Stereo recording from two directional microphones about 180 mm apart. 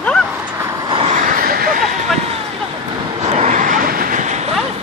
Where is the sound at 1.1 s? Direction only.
50° right (ahead or behind).